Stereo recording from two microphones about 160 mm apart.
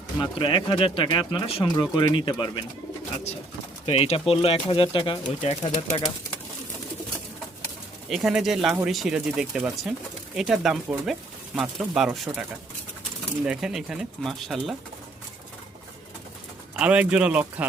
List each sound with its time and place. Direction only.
0.2 s speech: 30° left (ahead or behind)
3.8 s speech: 40° left (ahead or behind)
5.4 s speech: 45° left (ahead or behind)
8.1 s speech: centre (ahead or behind)
13.4 s speech: 5° right (ahead or behind)
16.7 s speech: 10° right (ahead or behind)